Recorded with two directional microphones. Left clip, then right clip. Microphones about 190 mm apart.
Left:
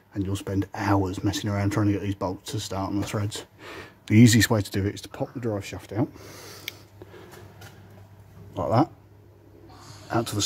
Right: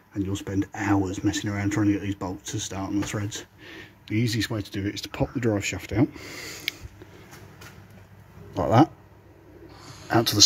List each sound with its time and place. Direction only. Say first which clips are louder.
0.1 s speech: even; 15° left (ahead or behind)
3.6 s speech: left 3 dB; 35° left (ahead or behind)
4.1 s speech: left 8 dB; 55° left (ahead or behind)
5.1 s speech: right 8 dB; 20° right (ahead or behind)
8.5 s speech: right 3 dB; 10° right (ahead or behind)
10.0 s speech: right 5 dB; 10° right (ahead or behind)